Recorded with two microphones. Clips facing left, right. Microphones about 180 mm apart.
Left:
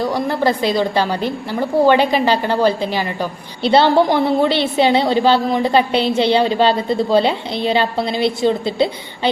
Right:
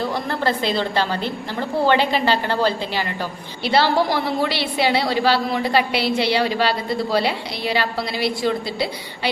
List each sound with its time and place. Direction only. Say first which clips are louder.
0.0 s a woman's voice: left 5 dB; 15° left (ahead or behind)